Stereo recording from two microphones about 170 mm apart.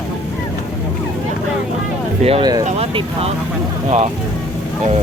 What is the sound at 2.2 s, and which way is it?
Speech, 35° right (ahead or behind).